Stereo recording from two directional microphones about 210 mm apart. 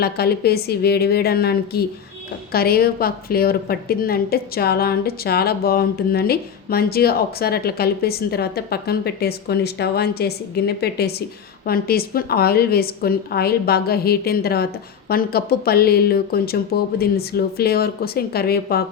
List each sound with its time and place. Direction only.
0.0 s a woman's voice: 50° left (ahead or behind)